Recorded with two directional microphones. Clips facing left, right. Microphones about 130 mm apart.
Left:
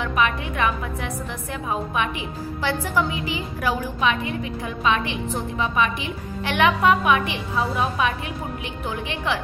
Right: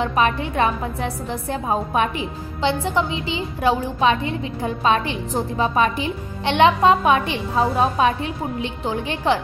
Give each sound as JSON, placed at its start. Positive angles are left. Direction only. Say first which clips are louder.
{"t": 0.0, "sound": "a woman's voice", "louder": "right 3 dB", "side_deg": -30}
{"t": 2.6, "sound": "a woman's voice", "louder": "right 3 dB", "side_deg": -25}